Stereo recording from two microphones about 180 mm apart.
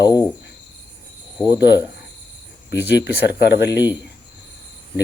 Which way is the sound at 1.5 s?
70° left (ahead or behind).